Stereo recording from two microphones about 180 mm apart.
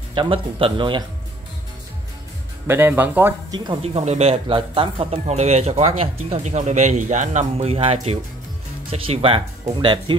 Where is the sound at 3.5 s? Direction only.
25° right (ahead or behind).